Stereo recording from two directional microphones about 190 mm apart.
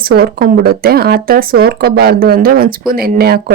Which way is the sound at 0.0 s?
55° right (ahead or behind).